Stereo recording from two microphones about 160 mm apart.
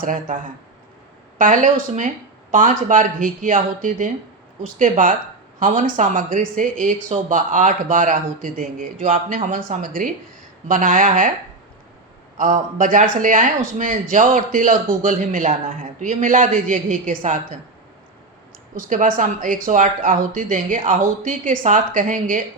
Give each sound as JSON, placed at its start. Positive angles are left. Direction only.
{"t": 0.0, "sound": "speech", "side_deg": -55}
{"t": 12.4, "sound": "speech", "side_deg": -55}
{"t": 18.8, "sound": "speech", "side_deg": -55}